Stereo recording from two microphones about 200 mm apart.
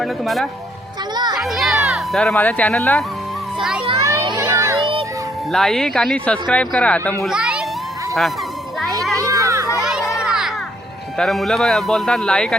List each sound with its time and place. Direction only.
0.0 s speech: centre (ahead or behind)
1.1 s a child's voice: 20° right (ahead or behind)
1.4 s speech: centre (ahead or behind)
3.8 s a child's voice: 15° right (ahead or behind)
5.5 s speech: centre (ahead or behind)
7.3 s children playing: 5° right (ahead or behind)
9.1 s children playing: 15° right (ahead or behind)
9.7 s children playing: centre (ahead or behind)
11.2 s speech: centre (ahead or behind)